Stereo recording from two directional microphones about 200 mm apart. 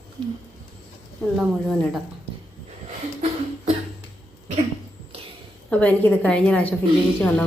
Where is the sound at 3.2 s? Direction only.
30° right (ahead or behind).